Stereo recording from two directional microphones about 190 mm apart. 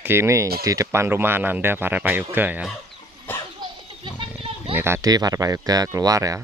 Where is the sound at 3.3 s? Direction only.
10° left (ahead or behind).